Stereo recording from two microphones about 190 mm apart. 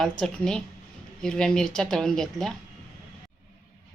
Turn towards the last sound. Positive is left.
turn(degrees=0)  # may be behind; listen again after turning